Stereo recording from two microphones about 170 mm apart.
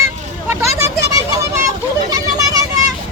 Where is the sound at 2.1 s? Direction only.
20° right (ahead or behind).